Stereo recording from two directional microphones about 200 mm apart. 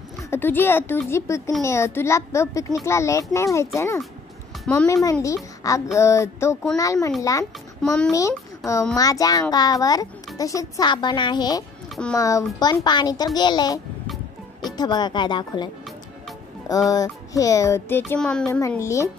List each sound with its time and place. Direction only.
0.3 s music: 10° left (ahead or behind)
5.2 s a woman's voice: 15° left (ahead or behind)
5.9 s music: 15° left (ahead or behind)
7.8 s a child's voice: 5° left (ahead or behind)
8.1 s a child's voice: 15° left (ahead or behind)
11.9 s speech: 5° left (ahead or behind)
12.2 s a child's voice: 15° left (ahead or behind)
14.8 s a child's voice: 20° left (ahead or behind)
16.9 s music: 15° left (ahead or behind)
18.5 s music: 15° left (ahead or behind)